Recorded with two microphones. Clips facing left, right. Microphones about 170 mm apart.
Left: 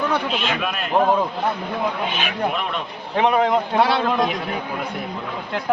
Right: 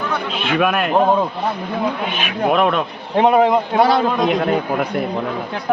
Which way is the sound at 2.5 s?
55° right (ahead or behind).